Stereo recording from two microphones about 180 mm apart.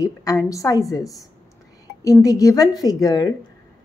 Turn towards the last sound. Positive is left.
turn(degrees=20)  # may be behind; listen again after turning